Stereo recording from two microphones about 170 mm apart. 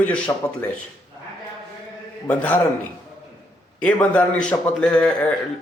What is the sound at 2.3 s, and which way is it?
Speech, 10° left (ahead or behind).